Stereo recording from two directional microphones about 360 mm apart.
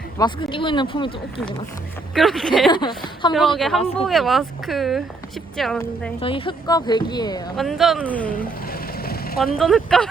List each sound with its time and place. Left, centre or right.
0.2 s speech: centre
2.1 s speech: centre
2.6 s speech: centre
3.9 s speech: centre
6.1 s speech: centre
7.5 s speech: centre
8.6 s vehicle: left
9.6 s speech: centre